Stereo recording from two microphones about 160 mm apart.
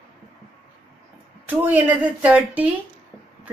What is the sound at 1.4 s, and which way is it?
A woman's voice, 10° right (ahead or behind).